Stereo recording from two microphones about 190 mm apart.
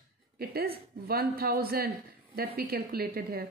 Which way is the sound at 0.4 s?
55° right (ahead or behind).